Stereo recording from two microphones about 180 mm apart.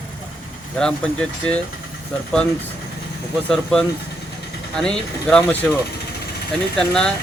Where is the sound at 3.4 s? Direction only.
5° left (ahead or behind).